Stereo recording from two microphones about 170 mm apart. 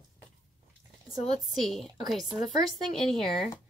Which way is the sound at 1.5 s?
Centre (ahead or behind).